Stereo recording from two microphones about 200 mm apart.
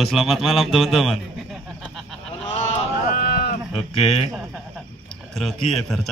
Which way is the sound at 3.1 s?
50° left (ahead or behind).